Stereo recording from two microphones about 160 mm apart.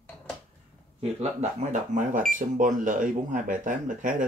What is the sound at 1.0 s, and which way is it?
Speech, 40° right (ahead or behind).